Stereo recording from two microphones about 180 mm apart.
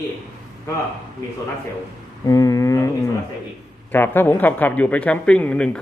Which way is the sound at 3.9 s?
10° left (ahead or behind).